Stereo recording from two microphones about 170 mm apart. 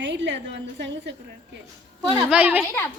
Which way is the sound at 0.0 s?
90° right.